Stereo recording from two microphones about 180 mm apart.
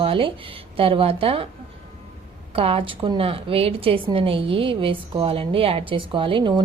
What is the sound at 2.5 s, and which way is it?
A woman's voice, 30° right (ahead or behind).